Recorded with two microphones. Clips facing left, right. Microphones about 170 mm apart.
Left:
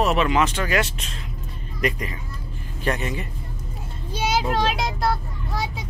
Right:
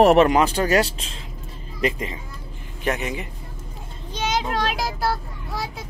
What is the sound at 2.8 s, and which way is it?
Speech, 15° right (ahead or behind).